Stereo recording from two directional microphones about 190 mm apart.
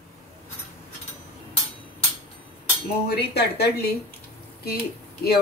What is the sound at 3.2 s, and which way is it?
Speech, 60° left (ahead or behind).